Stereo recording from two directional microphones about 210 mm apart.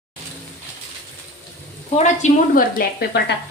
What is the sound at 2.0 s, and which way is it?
A woman's voice, 35° left (ahead or behind).